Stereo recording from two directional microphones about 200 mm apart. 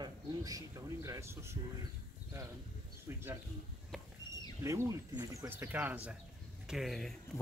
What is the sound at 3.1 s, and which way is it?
Speech, 15° right (ahead or behind).